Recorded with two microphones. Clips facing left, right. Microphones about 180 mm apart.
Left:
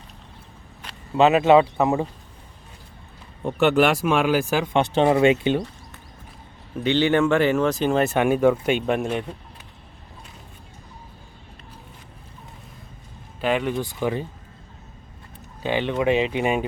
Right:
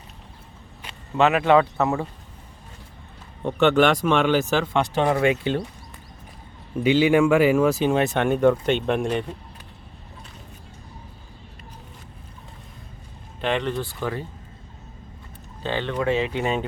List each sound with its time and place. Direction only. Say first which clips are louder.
1.1 s speech: left 2 dB; 20° left (ahead or behind)
3.4 s speech: even; 5° left (ahead or behind)
6.8 s speech: right 2 dB; 10° right (ahead or behind)
13.4 s speech: left 2 dB; 5° left (ahead or behind)
15.6 s speech: left 3 dB; 15° left (ahead or behind)